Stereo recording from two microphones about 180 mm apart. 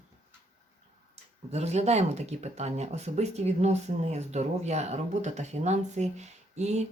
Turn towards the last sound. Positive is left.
turn(degrees=-40)  # may be behind; listen again after turning